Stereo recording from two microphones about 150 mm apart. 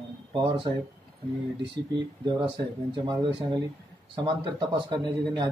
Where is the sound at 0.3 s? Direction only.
30° right (ahead or behind).